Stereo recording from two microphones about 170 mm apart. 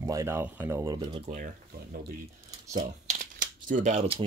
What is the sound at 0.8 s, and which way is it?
Speech, 25° right (ahead or behind).